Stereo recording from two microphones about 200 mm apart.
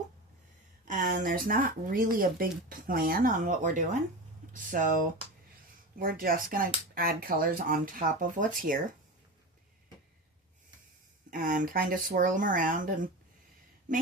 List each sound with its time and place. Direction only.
0.9 s a sound: 40° right (ahead or behind)
1.2 s speech: 45° right (ahead or behind)
6.0 s speech: 45° right (ahead or behind)
11.3 s speech: 45° right (ahead or behind)